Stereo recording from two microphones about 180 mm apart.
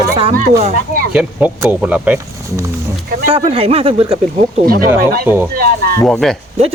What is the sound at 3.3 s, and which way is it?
Speech, 30° right (ahead or behind).